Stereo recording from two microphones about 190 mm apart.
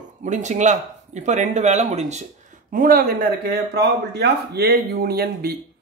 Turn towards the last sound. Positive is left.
turn(degrees=-55)  # may be behind; listen again after turning